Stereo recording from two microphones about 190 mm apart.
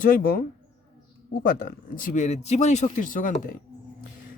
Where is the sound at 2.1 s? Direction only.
35° left (ahead or behind).